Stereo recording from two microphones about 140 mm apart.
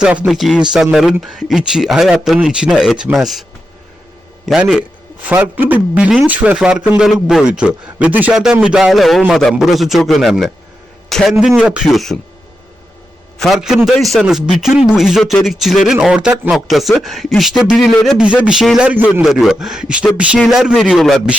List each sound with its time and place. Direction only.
0.0 s speech: 5° right (ahead or behind)
4.4 s a man's voice: 5° right (ahead or behind)
13.4 s a man's voice: centre (ahead or behind)